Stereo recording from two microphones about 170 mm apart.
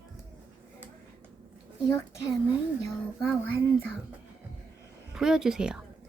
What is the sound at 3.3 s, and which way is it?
Speech, 10° left (ahead or behind).